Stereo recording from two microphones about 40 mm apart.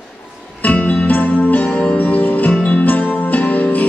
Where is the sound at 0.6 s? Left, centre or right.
Left.